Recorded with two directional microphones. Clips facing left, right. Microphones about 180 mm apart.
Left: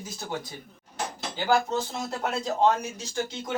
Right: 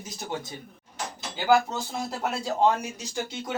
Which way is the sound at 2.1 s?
5° right (ahead or behind).